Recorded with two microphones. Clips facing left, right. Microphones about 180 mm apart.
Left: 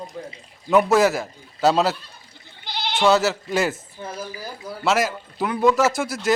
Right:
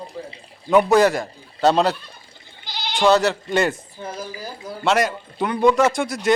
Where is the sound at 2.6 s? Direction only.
60° left (ahead or behind).